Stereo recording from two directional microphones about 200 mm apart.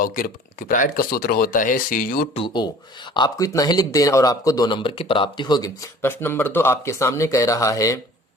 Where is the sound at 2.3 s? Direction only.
25° left (ahead or behind).